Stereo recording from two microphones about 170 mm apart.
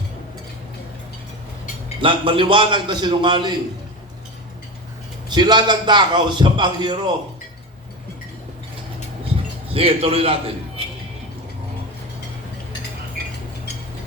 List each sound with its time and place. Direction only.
2.0 s a man's voice: 30° right (ahead or behind)
5.3 s a man's voice: 25° right (ahead or behind)
9.7 s a man's voice: 35° right (ahead or behind)